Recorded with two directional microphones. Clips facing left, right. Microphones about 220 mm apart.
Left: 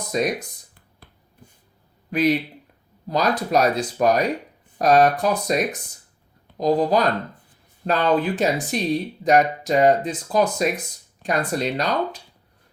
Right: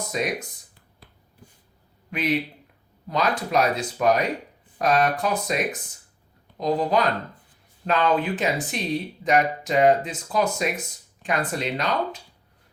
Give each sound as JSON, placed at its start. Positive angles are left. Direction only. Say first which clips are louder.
{"t": 0.1, "sound": "speech", "louder": "left 5 dB", "side_deg": 40}
{"t": 2.0, "sound": "speech", "louder": "left 5 dB", "side_deg": 40}